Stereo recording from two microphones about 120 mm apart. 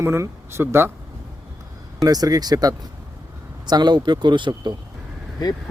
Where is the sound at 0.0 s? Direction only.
20° right (ahead or behind).